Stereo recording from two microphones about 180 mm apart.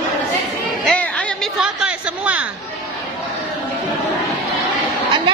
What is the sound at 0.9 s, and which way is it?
Chatter, 5° left (ahead or behind).